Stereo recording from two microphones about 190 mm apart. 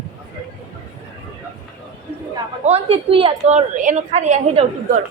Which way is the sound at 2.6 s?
30° right (ahead or behind).